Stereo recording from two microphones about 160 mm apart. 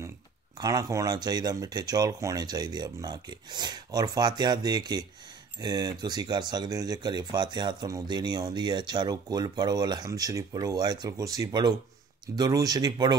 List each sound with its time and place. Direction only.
0.6 s speech: 25° right (ahead or behind)